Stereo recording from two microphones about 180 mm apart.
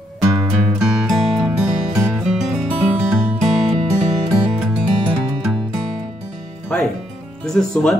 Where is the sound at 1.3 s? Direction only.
5° right (ahead or behind).